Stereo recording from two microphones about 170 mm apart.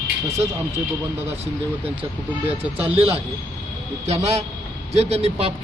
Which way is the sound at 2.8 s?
35° right (ahead or behind).